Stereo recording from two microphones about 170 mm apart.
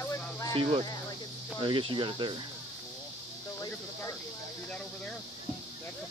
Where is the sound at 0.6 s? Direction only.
30° right (ahead or behind).